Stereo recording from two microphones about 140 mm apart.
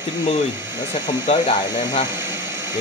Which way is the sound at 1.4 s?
30° left (ahead or behind).